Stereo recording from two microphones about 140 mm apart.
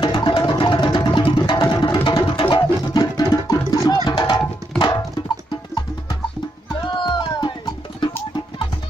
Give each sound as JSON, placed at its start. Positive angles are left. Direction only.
{"t": 0.0, "sound": "music", "side_deg": 35}
{"t": 7.0, "sound": "music", "side_deg": 30}